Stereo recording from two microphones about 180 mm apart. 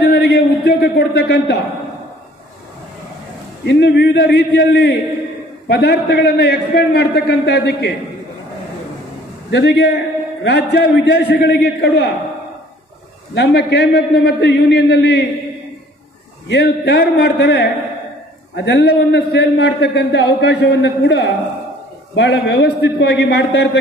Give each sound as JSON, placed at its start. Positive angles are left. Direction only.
{"t": 0.0, "sound": "a sound", "side_deg": 65}
{"t": 3.6, "sound": "a man's voice", "side_deg": 70}
{"t": 9.5, "sound": "a man's voice", "side_deg": 70}
{"t": 13.3, "sound": "a man's voice", "side_deg": 70}
{"t": 16.4, "sound": "a man's voice", "side_deg": 65}